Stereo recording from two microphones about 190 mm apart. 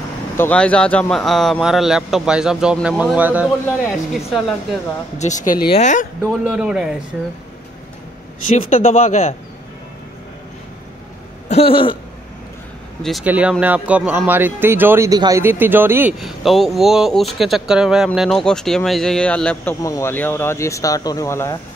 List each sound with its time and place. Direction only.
0.4 s speech: 5° left (ahead or behind)
5.2 s speech: 40° left (ahead or behind)
6.4 s speech: 5° right (ahead or behind)
8.6 s speech: 35° left (ahead or behind)
11.4 s a sound: 30° left (ahead or behind)
13.0 s speech: 5° right (ahead or behind); by 21.5 s 15° left (ahead or behind)